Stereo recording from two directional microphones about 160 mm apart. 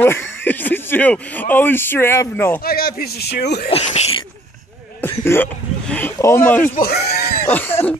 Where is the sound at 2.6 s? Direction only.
70° left (ahead or behind); by 3.7 s 90° left.